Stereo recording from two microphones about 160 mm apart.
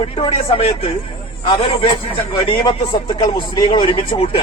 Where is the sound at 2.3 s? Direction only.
30° left (ahead or behind).